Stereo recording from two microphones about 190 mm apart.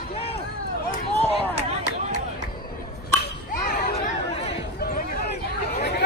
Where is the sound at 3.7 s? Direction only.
45° left (ahead or behind).